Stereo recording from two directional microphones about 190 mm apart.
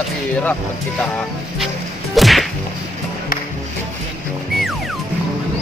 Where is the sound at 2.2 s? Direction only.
Centre (ahead or behind).